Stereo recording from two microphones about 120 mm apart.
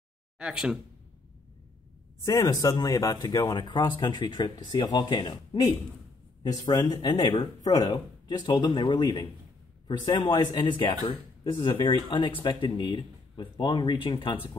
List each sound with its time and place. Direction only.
0.4 s speech: 5° right (ahead or behind)
2.2 s a man's voice: 30° left (ahead or behind); by 14.5 s 45° left (ahead or behind)